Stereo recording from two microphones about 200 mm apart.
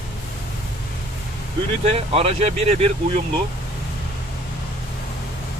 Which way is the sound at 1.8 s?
30° right (ahead or behind).